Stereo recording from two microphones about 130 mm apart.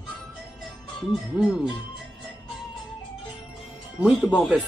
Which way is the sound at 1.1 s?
5° right (ahead or behind).